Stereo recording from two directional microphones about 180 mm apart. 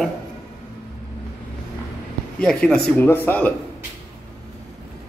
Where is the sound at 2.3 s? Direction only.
5° left (ahead or behind).